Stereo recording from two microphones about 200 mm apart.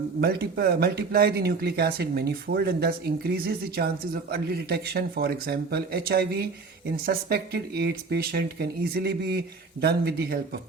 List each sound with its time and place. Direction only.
0.2 s speech: 50° right (ahead or behind)